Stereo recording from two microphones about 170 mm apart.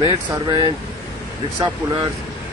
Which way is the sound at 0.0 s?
25° right (ahead or behind).